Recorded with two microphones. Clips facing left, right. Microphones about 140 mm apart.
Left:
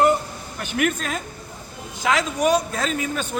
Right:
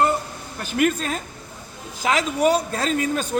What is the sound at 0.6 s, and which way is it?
Speech, 35° right (ahead or behind).